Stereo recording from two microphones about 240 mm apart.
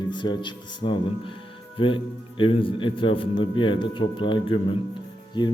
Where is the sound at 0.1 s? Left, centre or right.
Centre.